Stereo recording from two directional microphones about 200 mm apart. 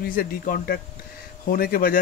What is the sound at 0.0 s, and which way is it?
Speech, 50° left (ahead or behind).